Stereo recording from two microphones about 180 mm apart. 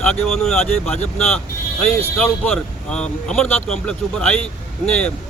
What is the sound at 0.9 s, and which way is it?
Speech, 35° left (ahead or behind).